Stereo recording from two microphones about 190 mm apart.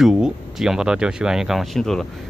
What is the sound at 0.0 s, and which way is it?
Speech, 5° right (ahead or behind).